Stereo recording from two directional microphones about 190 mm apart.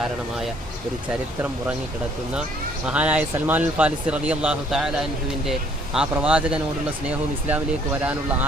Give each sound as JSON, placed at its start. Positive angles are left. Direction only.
{"t": 2.8, "sound": "speech", "side_deg": -5}